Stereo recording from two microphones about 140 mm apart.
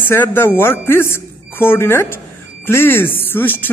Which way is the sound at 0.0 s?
15° left (ahead or behind).